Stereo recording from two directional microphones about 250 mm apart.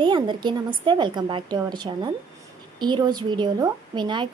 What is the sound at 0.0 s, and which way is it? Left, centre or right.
A woman's voice, centre.